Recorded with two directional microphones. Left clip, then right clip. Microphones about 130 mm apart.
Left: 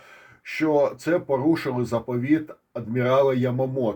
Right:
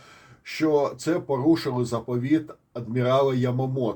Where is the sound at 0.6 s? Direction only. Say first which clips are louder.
Left 1 dB; 55° left (ahead or behind).